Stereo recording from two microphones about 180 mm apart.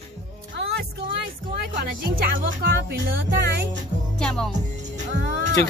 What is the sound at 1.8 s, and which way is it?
Speech, 60° right (ahead or behind).